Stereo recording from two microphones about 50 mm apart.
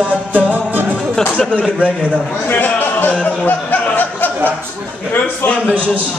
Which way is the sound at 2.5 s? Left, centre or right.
Left.